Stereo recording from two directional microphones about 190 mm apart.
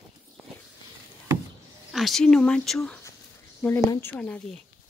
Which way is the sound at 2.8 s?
15° left (ahead or behind).